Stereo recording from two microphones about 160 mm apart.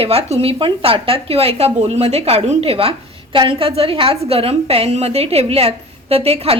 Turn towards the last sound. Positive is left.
turn(degrees=-40)  # may be behind; listen again after turning